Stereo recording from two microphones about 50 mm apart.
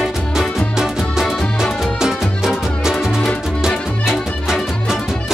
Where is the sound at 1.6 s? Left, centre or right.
Centre.